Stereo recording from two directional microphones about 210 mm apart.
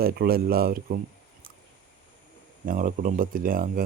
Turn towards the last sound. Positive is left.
turn(degrees=-40)  # may be behind; listen again after turning